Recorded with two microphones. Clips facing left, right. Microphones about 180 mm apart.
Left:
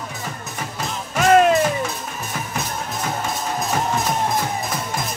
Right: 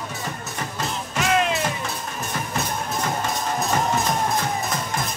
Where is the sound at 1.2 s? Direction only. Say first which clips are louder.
Left 8 dB; 45° left (ahead or behind).